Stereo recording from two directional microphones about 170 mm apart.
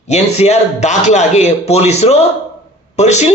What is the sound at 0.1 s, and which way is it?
Speech, 40° left (ahead or behind).